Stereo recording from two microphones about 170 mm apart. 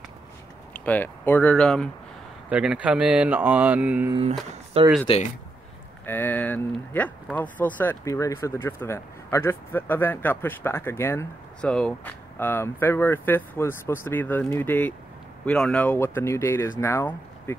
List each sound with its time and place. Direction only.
0.7 s speech: 10° left (ahead or behind); by 4.1 s 10° right (ahead or behind)
4.1 s speech: 35° right (ahead or behind)
6.0 s speech: 10° left (ahead or behind)